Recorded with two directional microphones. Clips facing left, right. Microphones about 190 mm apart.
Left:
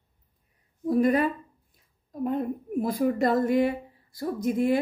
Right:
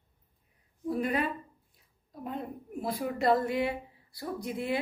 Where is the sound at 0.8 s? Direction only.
45° left (ahead or behind).